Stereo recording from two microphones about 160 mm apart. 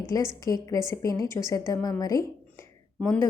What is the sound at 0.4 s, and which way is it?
A woman's voice, 20° left (ahead or behind).